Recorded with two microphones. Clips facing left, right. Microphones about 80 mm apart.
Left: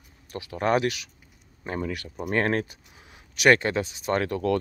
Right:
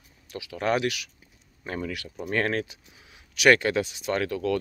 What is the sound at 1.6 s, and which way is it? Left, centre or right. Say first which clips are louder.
Speech: left 2 dB; left.